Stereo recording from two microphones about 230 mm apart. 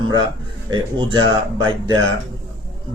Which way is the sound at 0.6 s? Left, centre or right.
Right.